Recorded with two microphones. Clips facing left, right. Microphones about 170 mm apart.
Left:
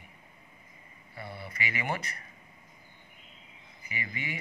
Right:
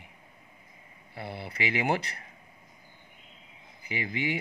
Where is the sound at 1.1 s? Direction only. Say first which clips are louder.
Right 4 dB; 30° right (ahead or behind).